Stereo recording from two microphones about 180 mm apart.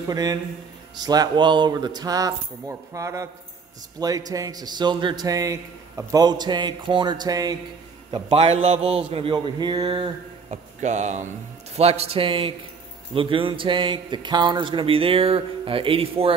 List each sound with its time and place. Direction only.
0.1 s a man's voice: 20° right (ahead or behind)
10.5 s a man's voice: 40° right (ahead or behind)